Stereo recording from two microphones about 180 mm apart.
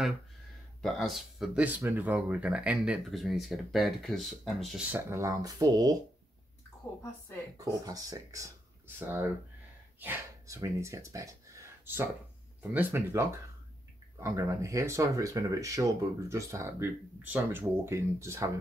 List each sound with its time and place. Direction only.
0.8 s speech: centre (ahead or behind)
4.9 s speech: 15° right (ahead or behind)
7.5 s speech: 20° right (ahead or behind)